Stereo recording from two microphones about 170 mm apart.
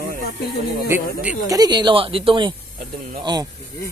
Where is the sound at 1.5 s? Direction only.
25° right (ahead or behind).